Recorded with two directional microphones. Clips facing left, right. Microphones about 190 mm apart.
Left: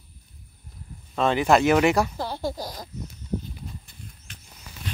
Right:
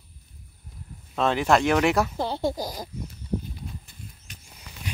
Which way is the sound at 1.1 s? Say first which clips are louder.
Left 2 dB; centre (ahead or behind).